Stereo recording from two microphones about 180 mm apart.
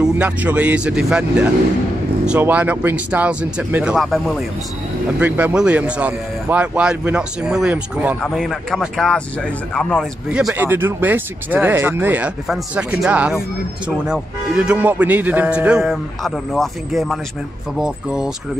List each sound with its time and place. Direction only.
0.0 s speech: 10° right (ahead or behind)
8.2 s speech: centre (ahead or behind)